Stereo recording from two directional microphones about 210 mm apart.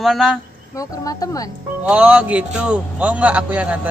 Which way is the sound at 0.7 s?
15° left (ahead or behind).